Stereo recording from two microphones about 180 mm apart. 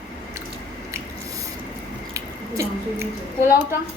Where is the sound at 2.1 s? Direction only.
15° right (ahead or behind).